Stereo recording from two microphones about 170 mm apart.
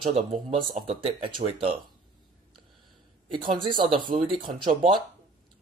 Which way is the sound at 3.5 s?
55° right (ahead or behind).